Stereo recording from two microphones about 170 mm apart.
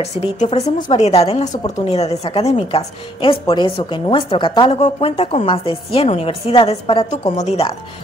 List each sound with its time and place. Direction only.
0.0 s a woman's voice: 40° left (ahead or behind)